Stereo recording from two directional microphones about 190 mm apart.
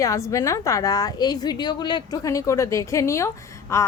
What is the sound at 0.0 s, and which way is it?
A woman's voice, 15° left (ahead or behind).